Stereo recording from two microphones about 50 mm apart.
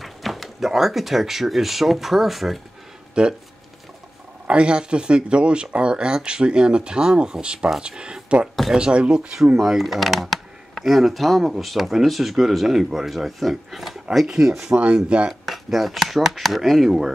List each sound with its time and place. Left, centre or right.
0.0 s speech: centre
3.2 s speech: centre
4.5 s speech: right
9.8 s speech: centre
15.4 s speech: centre